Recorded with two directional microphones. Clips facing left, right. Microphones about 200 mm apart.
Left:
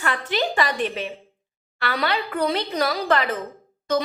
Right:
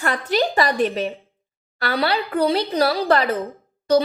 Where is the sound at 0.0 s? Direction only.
40° right (ahead or behind).